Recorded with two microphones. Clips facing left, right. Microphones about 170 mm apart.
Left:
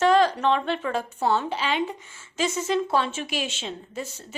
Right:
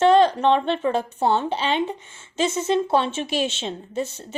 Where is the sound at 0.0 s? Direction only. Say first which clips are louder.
Right 4 dB; 25° right (ahead or behind).